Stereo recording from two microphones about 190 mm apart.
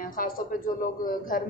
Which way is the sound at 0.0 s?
45° left (ahead or behind).